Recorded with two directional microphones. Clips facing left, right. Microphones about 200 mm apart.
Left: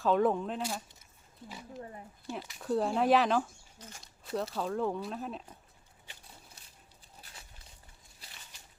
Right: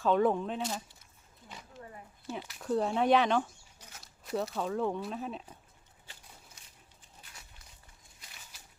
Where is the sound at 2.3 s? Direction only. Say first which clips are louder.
Even; centre (ahead or behind).